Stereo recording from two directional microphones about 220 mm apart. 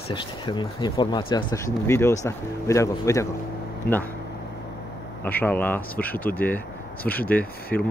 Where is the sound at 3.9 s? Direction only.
45° left (ahead or behind).